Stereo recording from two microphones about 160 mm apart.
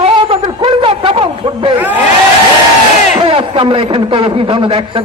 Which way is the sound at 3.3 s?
35° right (ahead or behind).